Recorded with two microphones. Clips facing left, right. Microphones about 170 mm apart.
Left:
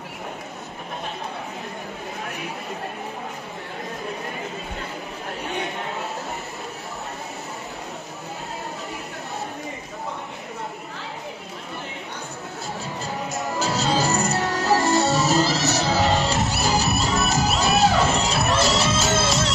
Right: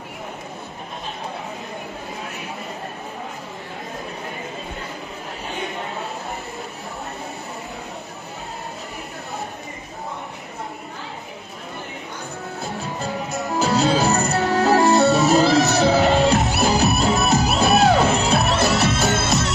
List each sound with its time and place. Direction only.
13.3 s music: 60° right (ahead or behind)